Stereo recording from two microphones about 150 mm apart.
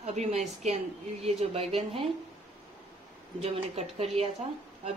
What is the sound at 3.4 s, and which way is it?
Speech, 40° right (ahead or behind).